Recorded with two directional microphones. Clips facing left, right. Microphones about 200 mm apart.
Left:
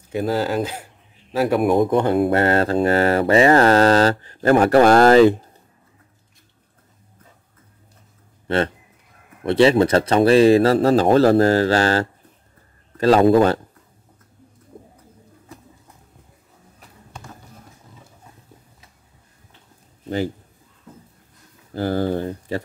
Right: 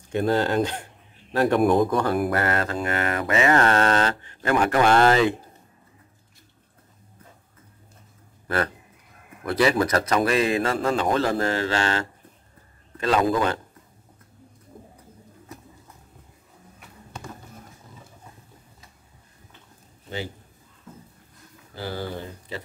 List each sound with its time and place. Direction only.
0.1 s speech: 5° left (ahead or behind)
1.8 s speech: 20° left (ahead or behind); by 5.3 s 40° left (ahead or behind)
8.5 s speech: 25° left (ahead or behind)
14.7 s bird: 25° left (ahead or behind)
21.7 s speech: 50° left (ahead or behind)